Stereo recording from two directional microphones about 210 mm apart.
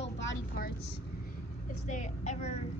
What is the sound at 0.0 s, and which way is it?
Vehicle, 60° left (ahead or behind).